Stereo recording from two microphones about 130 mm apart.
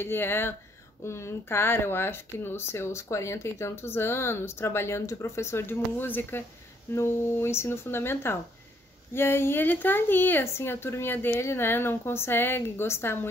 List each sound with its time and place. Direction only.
0.0 s speech: 15° left (ahead or behind)